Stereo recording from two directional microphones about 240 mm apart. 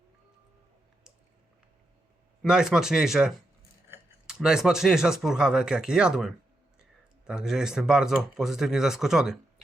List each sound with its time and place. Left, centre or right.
2.4 s speech: centre